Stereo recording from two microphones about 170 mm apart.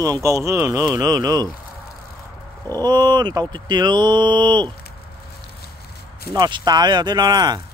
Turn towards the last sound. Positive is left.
turn(degrees=-25)  # may be behind; listen again after turning